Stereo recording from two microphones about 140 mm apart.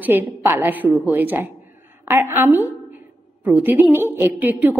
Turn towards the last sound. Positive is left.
turn(degrees=-15)  # may be behind; listen again after turning